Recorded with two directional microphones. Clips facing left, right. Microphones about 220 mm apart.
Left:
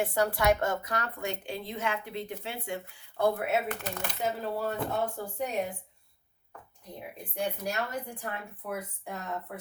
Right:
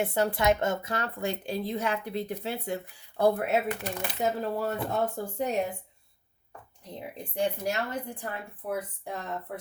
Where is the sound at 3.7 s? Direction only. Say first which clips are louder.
Right 3 dB; 10° right (ahead or behind).